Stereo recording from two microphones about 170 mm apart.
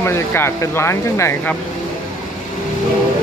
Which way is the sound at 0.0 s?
15° left (ahead or behind).